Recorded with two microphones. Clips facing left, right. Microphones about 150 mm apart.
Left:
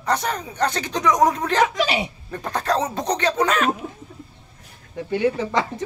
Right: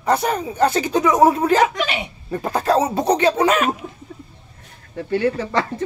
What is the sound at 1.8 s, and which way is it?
Speech, 35° left (ahead or behind).